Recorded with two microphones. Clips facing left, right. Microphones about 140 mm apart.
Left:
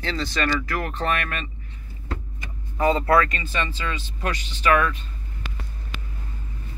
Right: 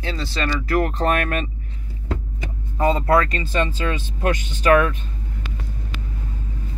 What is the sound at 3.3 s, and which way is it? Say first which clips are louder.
Speech: right 6 dB; 40° right (ahead or behind).